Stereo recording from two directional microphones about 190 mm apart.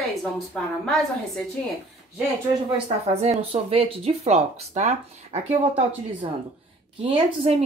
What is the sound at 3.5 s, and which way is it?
Speech, 30° right (ahead or behind).